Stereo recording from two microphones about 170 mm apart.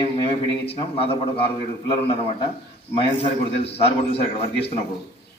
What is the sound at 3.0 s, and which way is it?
A man's voice, 35° left (ahead or behind).